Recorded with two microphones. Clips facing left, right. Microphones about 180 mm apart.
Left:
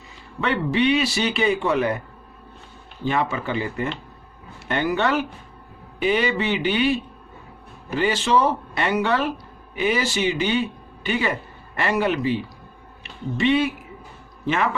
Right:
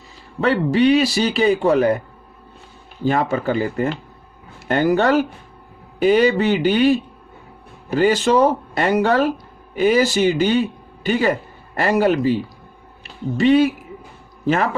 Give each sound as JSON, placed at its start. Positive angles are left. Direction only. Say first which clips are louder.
{"t": 0.4, "sound": "speech", "louder": "right 5 dB", "side_deg": -40}
{"t": 3.0, "sound": "speech", "louder": "right 5 dB", "side_deg": -40}